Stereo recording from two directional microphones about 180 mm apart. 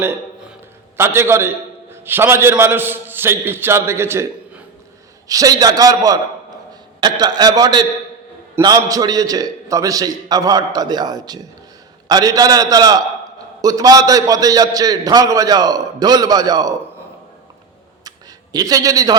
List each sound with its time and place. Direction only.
0.9 s a man's voice: 15° right (ahead or behind)
18.5 s a man's voice: 20° right (ahead or behind)